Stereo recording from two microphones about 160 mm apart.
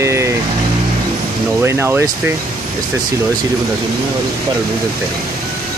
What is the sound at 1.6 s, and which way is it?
Speech, 15° right (ahead or behind).